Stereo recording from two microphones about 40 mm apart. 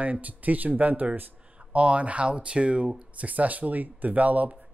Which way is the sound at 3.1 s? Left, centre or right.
Right.